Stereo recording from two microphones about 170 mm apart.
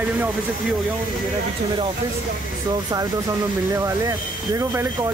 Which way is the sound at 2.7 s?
25° right (ahead or behind).